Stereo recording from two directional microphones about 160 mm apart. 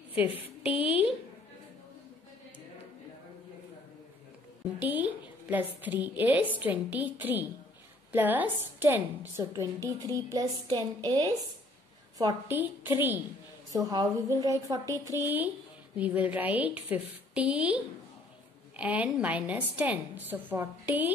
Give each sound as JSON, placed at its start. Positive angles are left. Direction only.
{"t": 0.3, "sound": "a woman's voice", "side_deg": 35}
{"t": 4.7, "sound": "a woman's voice", "side_deg": -10}
{"t": 12.4, "sound": "a woman's voice", "side_deg": -10}